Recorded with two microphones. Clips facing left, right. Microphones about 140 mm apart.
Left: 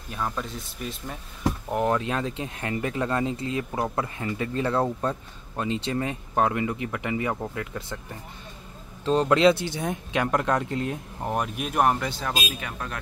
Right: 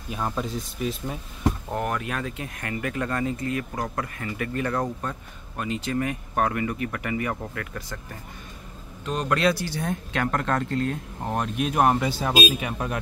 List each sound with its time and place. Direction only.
0.1 s speech: 10° right (ahead or behind)
1.7 s speech: 20° left (ahead or behind)
9.0 s speech: 30° left (ahead or behind); by 12.9 s 15° right (ahead or behind)